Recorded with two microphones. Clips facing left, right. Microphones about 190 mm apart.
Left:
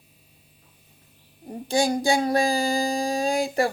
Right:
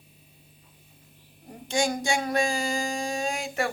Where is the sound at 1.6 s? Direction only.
35° left (ahead or behind).